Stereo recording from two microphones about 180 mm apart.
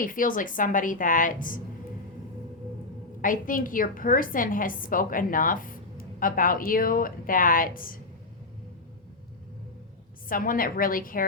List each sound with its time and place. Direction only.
0.0 s a woman's voice: 50° left (ahead or behind)
3.2 s a woman's voice: 50° left (ahead or behind)
10.2 s a woman's voice: 50° left (ahead or behind)